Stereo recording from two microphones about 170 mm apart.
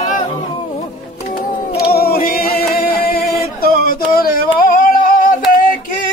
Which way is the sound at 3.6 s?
60° left (ahead or behind).